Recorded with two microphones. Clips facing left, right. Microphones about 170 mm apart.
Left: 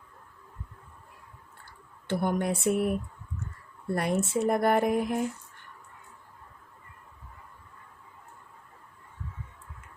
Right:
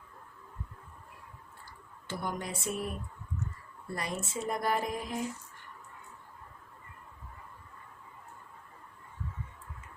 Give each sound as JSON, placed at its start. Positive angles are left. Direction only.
{"t": 2.0, "sound": "speech", "side_deg": 60}
{"t": 3.9, "sound": "speech", "side_deg": 60}